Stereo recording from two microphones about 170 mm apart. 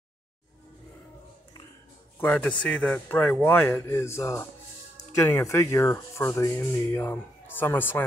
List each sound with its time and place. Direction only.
2.1 s a man's voice: 5° left (ahead or behind)